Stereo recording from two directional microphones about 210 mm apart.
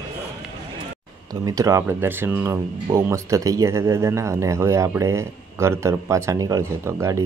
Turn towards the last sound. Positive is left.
turn(degrees=-15)  # may be behind; listen again after turning